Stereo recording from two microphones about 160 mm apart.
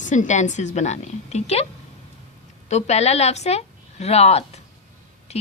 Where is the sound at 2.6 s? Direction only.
45° left (ahead or behind).